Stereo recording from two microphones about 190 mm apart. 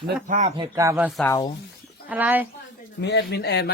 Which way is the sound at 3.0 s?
65° left (ahead or behind).